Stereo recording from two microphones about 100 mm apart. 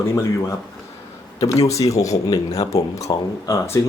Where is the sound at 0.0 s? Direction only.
25° left (ahead or behind).